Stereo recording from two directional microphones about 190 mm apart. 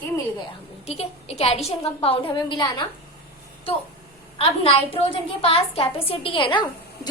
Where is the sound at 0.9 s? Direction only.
35° left (ahead or behind).